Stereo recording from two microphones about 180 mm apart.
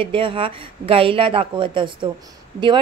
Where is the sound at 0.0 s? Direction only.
30° right (ahead or behind).